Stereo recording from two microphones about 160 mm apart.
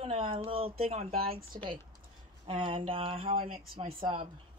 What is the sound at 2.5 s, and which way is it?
Speech, 35° right (ahead or behind).